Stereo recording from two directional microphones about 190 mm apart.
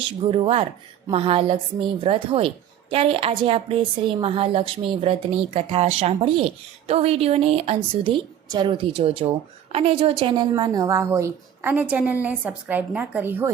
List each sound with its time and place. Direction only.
0.0 s a woman's voice: 30° right (ahead or behind); by 13.5 s 10° right (ahead or behind)